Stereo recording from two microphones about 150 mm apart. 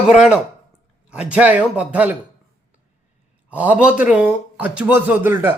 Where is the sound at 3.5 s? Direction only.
10° right (ahead or behind).